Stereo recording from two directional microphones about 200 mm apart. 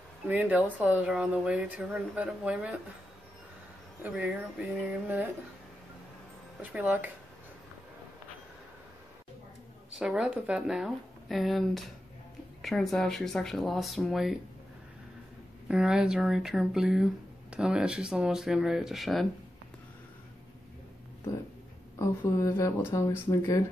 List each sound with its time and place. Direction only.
0.3 s speech: 5° right (ahead or behind)
4.0 s speech: 5° right (ahead or behind)
6.6 s speech: 5° right (ahead or behind)
9.9 s speech: 5° right (ahead or behind)
15.7 s speech: 5° right (ahead or behind)
21.9 s speech: 15° left (ahead or behind)